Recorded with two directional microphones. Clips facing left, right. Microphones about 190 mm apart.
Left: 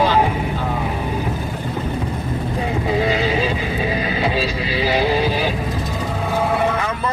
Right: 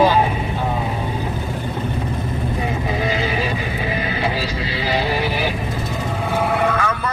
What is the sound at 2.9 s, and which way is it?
Music, 20° left (ahead or behind).